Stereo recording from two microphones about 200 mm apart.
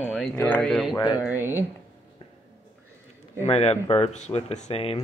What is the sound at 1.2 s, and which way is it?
Speech, 10° right (ahead or behind).